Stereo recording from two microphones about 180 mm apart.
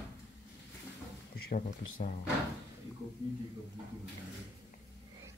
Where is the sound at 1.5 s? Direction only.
50° left (ahead or behind).